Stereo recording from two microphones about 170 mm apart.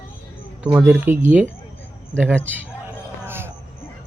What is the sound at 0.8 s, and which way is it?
Speech, 10° right (ahead or behind).